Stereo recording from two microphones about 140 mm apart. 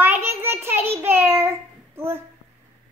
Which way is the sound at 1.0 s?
15° right (ahead or behind).